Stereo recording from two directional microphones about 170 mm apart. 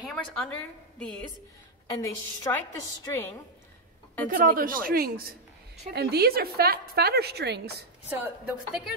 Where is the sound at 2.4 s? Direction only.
20° left (ahead or behind).